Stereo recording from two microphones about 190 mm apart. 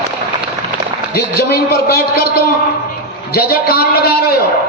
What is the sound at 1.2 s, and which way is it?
A man's voice, 55° left (ahead or behind).